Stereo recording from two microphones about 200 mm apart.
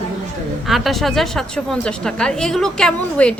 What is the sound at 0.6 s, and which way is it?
A woman's voice, centre (ahead or behind).